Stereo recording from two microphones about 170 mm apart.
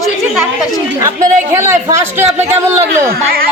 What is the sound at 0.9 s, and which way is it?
Speech, 20° right (ahead or behind).